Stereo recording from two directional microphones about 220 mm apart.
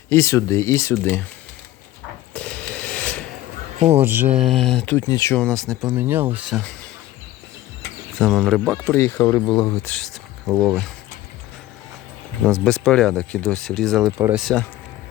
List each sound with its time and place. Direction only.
0.1 s speech: 10° left (ahead or behind)
2.3 s a sound: 5° left (ahead or behind)
4.0 s speech: 10° right (ahead or behind)
8.2 s speech: centre (ahead or behind)
9.0 s speech: 10° left (ahead or behind)
9.8 s speech: 5° left (ahead or behind)
12.4 s speech: 5° left (ahead or behind)
14.0 s speech: 10° right (ahead or behind)
14.4 s speech: 5° left (ahead or behind)